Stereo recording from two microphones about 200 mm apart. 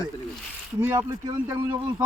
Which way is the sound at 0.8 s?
15° right (ahead or behind).